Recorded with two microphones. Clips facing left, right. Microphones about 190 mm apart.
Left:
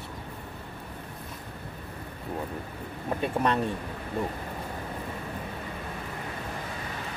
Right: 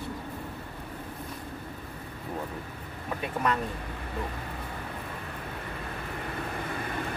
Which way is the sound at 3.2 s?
35° left (ahead or behind).